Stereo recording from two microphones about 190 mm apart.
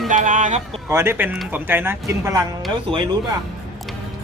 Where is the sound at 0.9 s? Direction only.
15° right (ahead or behind).